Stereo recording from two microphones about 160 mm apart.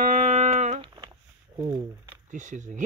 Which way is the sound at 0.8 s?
30° right (ahead or behind).